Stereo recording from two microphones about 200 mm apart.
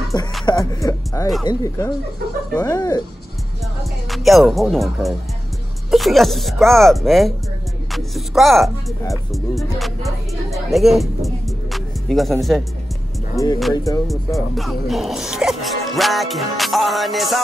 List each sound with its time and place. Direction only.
0.1 s speech: 20° left (ahead or behind)
4.1 s speech: centre (ahead or behind)
13.7 s speech: 15° left (ahead or behind)
14.0 s speech: centre (ahead or behind)